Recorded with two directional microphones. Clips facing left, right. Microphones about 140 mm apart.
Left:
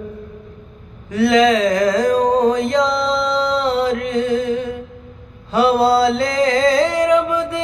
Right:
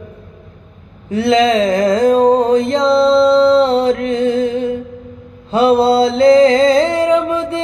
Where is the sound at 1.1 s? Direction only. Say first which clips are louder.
Right 1 dB; 25° right (ahead or behind).